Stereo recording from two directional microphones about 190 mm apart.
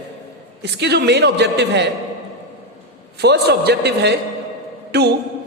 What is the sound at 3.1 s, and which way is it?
A man's voice, 60° right (ahead or behind).